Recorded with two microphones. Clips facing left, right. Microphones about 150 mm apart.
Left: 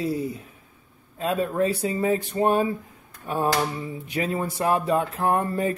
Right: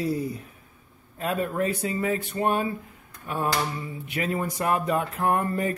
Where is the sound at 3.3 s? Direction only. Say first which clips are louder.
Left 3 dB; 40° left (ahead or behind).